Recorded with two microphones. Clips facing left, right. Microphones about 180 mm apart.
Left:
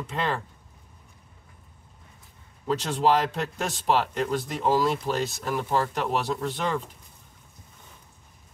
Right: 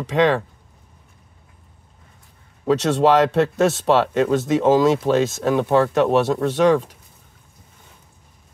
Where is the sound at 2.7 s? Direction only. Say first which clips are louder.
Right 7 dB; 75° right (ahead or behind).